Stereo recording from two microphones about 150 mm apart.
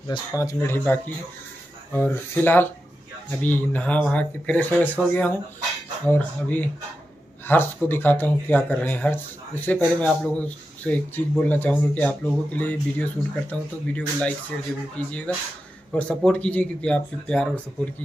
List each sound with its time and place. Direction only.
0.4 s speech: 20° left (ahead or behind)